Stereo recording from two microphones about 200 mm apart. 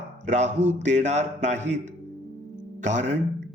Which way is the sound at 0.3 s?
35° right (ahead or behind).